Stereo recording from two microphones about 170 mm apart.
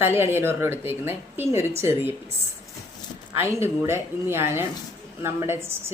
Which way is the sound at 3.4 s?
15° right (ahead or behind).